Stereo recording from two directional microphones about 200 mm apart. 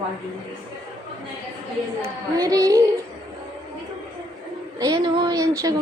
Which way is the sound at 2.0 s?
20° right (ahead or behind).